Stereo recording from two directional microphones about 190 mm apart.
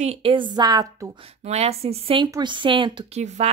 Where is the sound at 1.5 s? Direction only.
35° right (ahead or behind).